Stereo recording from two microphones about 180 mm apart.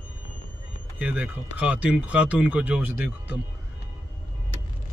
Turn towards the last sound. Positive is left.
turn(degrees=-10)  # may be behind; listen again after turning